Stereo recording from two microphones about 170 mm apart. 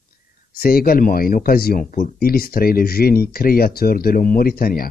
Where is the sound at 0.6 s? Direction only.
60° left (ahead or behind).